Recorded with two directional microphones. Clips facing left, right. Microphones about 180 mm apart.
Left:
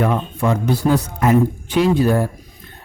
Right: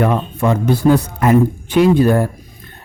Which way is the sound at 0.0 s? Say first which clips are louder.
Right 3 dB; 55° right (ahead or behind).